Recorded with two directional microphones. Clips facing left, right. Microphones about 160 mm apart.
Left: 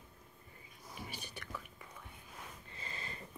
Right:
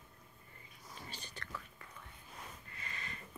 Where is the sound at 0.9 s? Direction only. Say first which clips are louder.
Left 3 dB; 10° left (ahead or behind).